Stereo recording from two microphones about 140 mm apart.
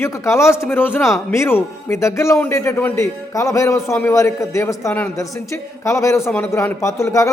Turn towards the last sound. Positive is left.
turn(degrees=20)  # may be behind; listen again after turning